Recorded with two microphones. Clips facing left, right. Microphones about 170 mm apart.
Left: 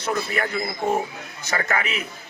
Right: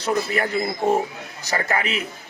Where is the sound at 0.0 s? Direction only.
35° right (ahead or behind).